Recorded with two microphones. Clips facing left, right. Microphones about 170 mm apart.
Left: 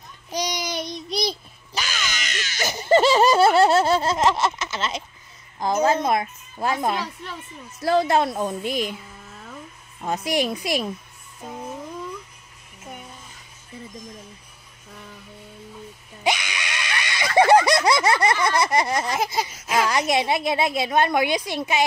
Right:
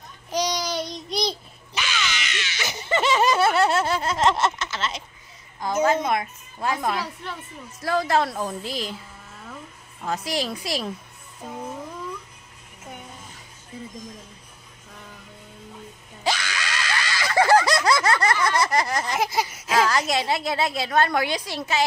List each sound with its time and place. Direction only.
0.3 s child singing: 15° left (ahead or behind)
1.7 s a sound: 40° left (ahead or behind)
4.2 s a sound: centre (ahead or behind)
4.6 s speech: 20° left (ahead or behind)
5.6 s a woman's voice: 40° left (ahead or behind)
6.0 s a woman's voice: 25° left (ahead or behind)
10.0 s a woman's voice: 20° left (ahead or behind)
16.3 s screaming: 15° left (ahead or behind)
19.1 s a sound: centre (ahead or behind)
19.7 s a woman's voice: 20° left (ahead or behind)